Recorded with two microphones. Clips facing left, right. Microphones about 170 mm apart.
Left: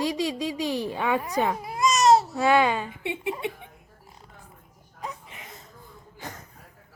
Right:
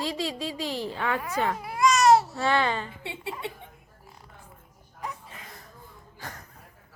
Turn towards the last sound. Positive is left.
turn(degrees=20)  # may be behind; listen again after turning